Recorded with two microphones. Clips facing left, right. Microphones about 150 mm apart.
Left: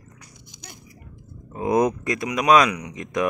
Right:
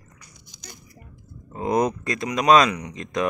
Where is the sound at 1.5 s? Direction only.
15° left (ahead or behind).